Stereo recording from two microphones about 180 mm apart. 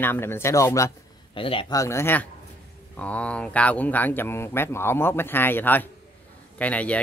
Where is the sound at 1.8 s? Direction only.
15° left (ahead or behind).